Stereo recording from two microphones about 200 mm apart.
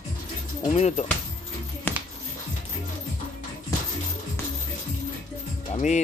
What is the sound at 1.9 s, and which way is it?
Music, 10° left (ahead or behind).